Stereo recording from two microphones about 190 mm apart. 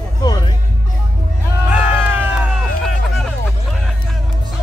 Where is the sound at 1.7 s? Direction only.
10° right (ahead or behind).